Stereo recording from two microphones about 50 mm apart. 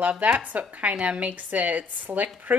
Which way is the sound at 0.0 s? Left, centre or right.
Right.